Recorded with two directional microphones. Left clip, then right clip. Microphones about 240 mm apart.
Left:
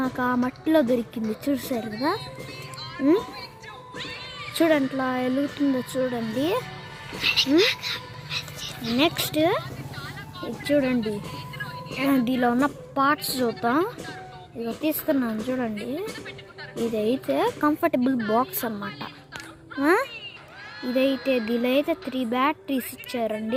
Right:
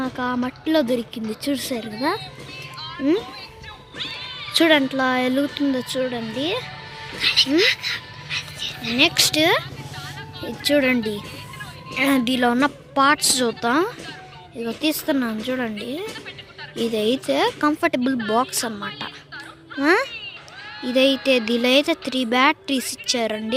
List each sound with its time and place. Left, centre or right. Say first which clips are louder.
0.0 s speech: even; centre
3.9 s music: right 5 dB; left
4.5 s speech: right 5 dB; centre
5.7 s speech: right 2 dB; centre
6.4 s speech: right 1 dB; centre
7.2 s music: right 3 dB; centre
9.0 s speech: right 6 dB; centre